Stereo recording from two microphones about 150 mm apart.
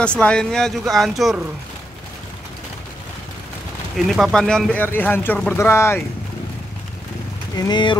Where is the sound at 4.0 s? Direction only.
Centre (ahead or behind); by 6.0 s 15° left (ahead or behind).